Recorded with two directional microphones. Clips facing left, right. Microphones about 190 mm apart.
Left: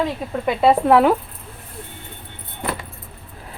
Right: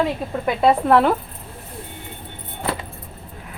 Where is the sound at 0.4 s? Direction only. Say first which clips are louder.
Left 1 dB; 5° left (ahead or behind).